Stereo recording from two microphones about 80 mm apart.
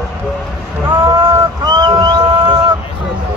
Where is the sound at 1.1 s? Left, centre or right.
Right.